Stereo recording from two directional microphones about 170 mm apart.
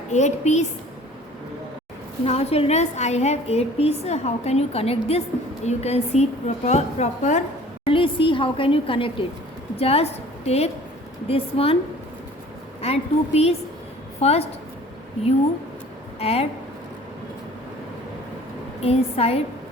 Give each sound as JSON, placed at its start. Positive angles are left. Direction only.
{"t": 0.1, "sound": "a woman's voice", "side_deg": 45}
{"t": 2.2, "sound": "a woman's voice", "side_deg": 35}
{"t": 7.9, "sound": "a woman's voice", "side_deg": 30}
{"t": 12.8, "sound": "a woman's voice", "side_deg": 35}
{"t": 16.2, "sound": "a woman's voice", "side_deg": 35}
{"t": 18.8, "sound": "a woman's voice", "side_deg": 35}